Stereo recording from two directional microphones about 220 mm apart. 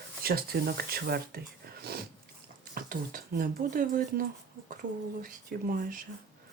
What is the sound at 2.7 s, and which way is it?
Speech, 40° right (ahead or behind).